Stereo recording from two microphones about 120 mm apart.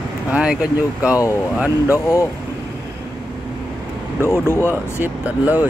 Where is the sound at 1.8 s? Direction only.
20° left (ahead or behind).